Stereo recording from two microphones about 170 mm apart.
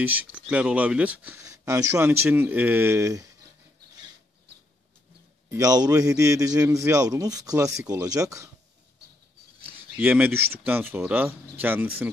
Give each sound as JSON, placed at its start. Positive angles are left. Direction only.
{"t": 0.0, "sound": "speech", "side_deg": -10}
{"t": 5.5, "sound": "a man's voice", "side_deg": -20}
{"t": 9.9, "sound": "speech", "side_deg": -10}